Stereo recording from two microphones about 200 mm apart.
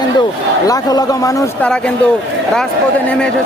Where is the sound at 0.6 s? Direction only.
20° left (ahead or behind).